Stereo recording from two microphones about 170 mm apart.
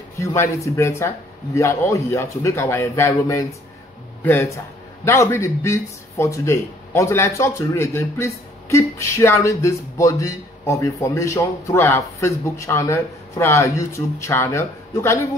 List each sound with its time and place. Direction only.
0.2 s speech: 15° left (ahead or behind)